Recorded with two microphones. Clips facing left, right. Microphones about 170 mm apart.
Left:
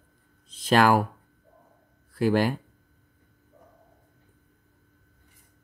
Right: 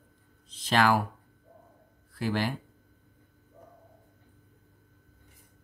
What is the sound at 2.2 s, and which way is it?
Speech, 50° left (ahead or behind).